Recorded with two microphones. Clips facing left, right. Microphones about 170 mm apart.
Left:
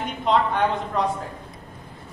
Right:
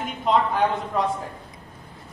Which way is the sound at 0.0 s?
Centre (ahead or behind).